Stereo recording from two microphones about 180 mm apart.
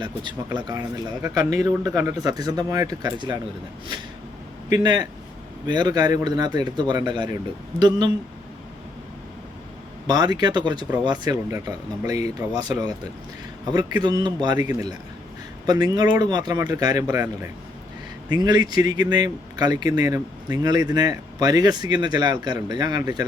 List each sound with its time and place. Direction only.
0.0 s speech: 25° right (ahead or behind)
4.7 s speech: 20° right (ahead or behind)
10.1 s speech: 20° right (ahead or behind)